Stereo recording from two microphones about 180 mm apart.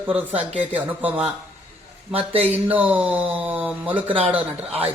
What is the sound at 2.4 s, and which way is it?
Speech, 10° right (ahead or behind).